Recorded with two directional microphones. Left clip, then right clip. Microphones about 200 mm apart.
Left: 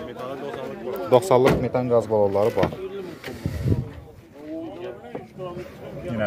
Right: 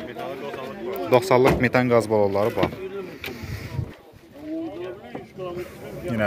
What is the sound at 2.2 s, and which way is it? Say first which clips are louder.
Speech: left 1 dB; centre (ahead or behind).